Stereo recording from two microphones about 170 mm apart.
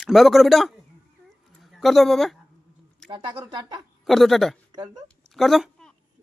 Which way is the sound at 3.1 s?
25° right (ahead or behind).